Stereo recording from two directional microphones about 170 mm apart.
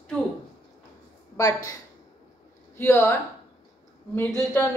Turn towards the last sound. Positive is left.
turn(degrees=10)  # may be behind; listen again after turning